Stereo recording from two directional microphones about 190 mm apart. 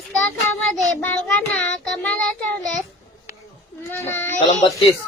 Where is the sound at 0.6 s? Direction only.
5° left (ahead or behind).